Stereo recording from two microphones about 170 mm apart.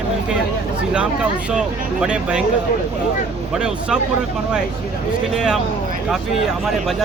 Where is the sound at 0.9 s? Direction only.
5° right (ahead or behind).